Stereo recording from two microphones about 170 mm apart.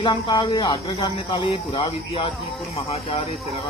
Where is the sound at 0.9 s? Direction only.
35° left (ahead or behind).